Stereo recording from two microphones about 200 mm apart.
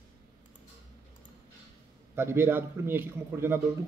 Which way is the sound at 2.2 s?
10° right (ahead or behind).